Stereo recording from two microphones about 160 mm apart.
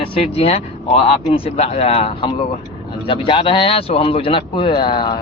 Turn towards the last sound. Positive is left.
turn(degrees=30)  # may be behind; listen again after turning